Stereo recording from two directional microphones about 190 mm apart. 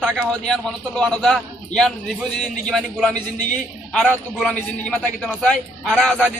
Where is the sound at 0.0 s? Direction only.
Centre (ahead or behind).